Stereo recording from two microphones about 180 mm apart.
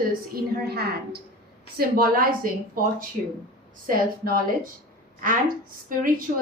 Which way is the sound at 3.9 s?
55° right (ahead or behind).